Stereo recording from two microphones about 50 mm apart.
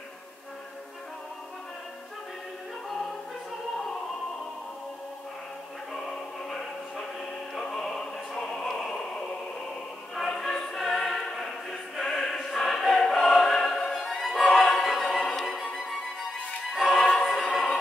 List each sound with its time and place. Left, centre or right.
5.9 s music: centre
10.1 s choir: centre
14.0 s music: centre
14.4 s music: centre
14.7 s music: centre
16.7 s music: centre
17.1 s choir: centre